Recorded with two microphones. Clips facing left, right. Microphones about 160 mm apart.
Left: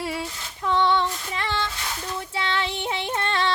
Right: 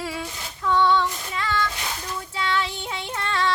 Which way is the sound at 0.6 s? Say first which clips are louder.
Right 1 dB; 25° left (ahead or behind).